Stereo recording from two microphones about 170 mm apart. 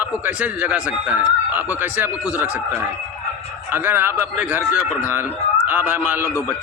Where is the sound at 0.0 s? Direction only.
10° right (ahead or behind).